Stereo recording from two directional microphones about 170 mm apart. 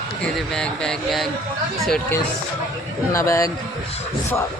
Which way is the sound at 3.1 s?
20° left (ahead or behind).